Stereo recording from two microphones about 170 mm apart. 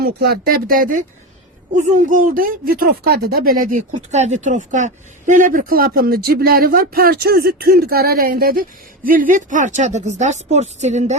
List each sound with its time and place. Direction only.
0.0 s speech: 65° right (ahead or behind)
4.1 s speech: 40° right (ahead or behind)